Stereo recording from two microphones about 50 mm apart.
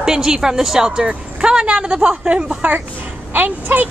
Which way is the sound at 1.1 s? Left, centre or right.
Centre.